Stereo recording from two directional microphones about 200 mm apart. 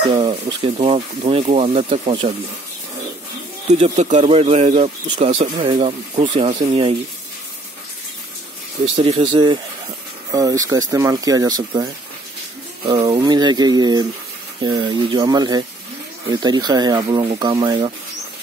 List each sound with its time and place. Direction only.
0.3 s speech: 30° right (ahead or behind)
3.6 s speech: 35° right (ahead or behind)
8.9 s speech: 30° right (ahead or behind)